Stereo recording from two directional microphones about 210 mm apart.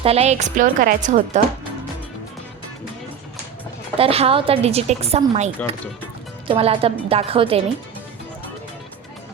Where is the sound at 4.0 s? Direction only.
25° right (ahead or behind).